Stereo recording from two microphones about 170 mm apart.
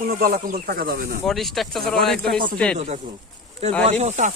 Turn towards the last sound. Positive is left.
turn(degrees=-40)  # may be behind; listen again after turning